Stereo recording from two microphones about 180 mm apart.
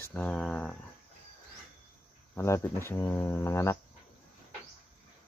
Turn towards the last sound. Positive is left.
turn(degrees=15)  # may be behind; listen again after turning